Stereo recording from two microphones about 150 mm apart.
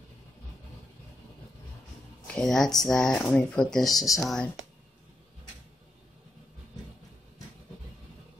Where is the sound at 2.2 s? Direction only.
5° left (ahead or behind).